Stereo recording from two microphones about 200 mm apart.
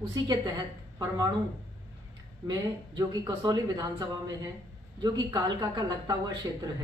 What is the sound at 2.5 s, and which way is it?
Speech, 20° right (ahead or behind).